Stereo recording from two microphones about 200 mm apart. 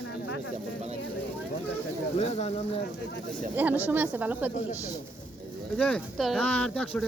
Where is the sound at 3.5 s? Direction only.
10° right (ahead or behind).